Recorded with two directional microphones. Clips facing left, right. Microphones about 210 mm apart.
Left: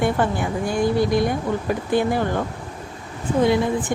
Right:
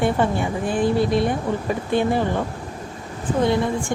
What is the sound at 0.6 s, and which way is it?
Speech, 30° right (ahead or behind).